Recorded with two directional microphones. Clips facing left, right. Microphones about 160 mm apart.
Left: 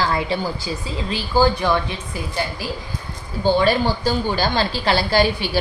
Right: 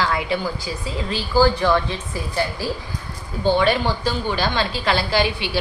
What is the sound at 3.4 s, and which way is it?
Speech, 35° left (ahead or behind).